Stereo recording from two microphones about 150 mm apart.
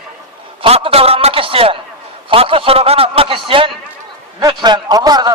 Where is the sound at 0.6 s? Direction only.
40° right (ahead or behind).